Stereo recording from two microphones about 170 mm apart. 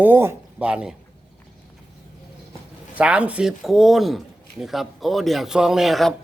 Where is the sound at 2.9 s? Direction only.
5° right (ahead or behind).